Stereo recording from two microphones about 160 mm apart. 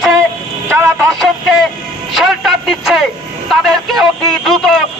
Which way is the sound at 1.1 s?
Centre (ahead or behind).